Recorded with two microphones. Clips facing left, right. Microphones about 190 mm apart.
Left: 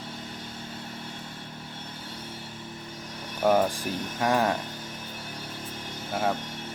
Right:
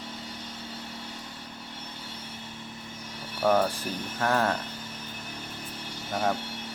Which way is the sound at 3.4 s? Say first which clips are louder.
Left 1 dB; 15° left (ahead or behind).